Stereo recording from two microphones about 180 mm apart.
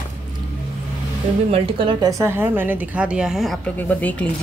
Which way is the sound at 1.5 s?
30° right (ahead or behind).